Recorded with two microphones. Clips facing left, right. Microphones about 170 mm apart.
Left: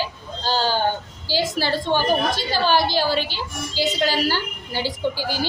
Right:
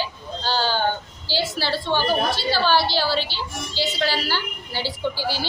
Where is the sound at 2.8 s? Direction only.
45° left (ahead or behind).